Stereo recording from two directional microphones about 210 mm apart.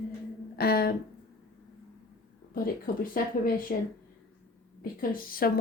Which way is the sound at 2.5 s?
45° left (ahead or behind).